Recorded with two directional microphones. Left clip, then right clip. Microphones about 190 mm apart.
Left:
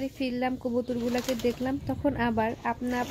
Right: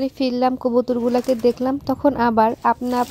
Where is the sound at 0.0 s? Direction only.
35° right (ahead or behind).